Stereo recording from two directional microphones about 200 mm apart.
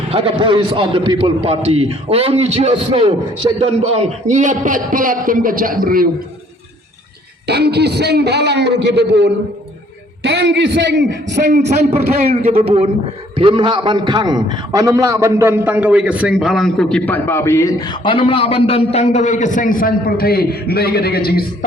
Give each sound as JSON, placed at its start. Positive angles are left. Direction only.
{"t": 0.1, "sound": "a man's voice", "side_deg": -25}
{"t": 7.4, "sound": "a man's voice", "side_deg": -55}
{"t": 12.2, "sound": "a man's voice", "side_deg": -30}